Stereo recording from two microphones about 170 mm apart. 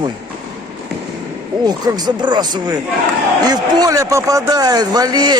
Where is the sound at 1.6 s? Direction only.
25° right (ahead or behind).